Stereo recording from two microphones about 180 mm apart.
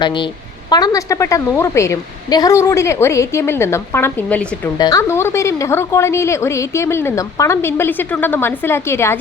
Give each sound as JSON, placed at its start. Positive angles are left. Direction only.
{"t": 0.0, "sound": "a woman's voice", "side_deg": 25}
{"t": 4.8, "sound": "a woman's voice", "side_deg": 20}